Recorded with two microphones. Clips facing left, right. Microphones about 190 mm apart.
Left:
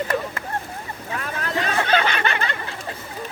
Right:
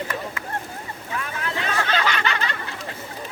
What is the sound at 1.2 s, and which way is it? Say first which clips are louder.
Boat: left 3 dB; 40° left (ahead or behind).